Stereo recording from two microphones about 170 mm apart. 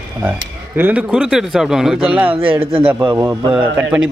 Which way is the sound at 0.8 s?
10° right (ahead or behind).